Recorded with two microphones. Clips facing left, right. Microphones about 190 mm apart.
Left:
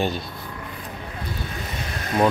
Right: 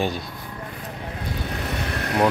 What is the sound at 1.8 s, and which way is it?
Vehicle, 65° right (ahead or behind).